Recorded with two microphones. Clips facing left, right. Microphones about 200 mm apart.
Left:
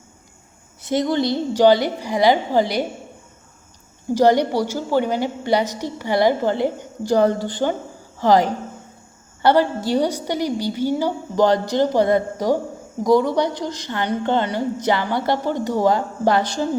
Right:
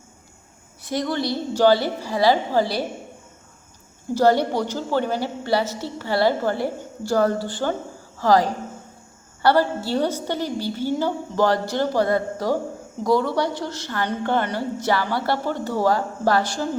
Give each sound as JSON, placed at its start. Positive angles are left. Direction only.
{"t": 0.8, "sound": "a woman's voice", "side_deg": 20}
{"t": 4.1, "sound": "a woman's voice", "side_deg": 15}